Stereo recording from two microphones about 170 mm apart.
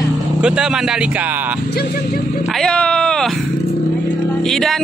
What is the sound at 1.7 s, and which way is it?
Speech, 65° left (ahead or behind).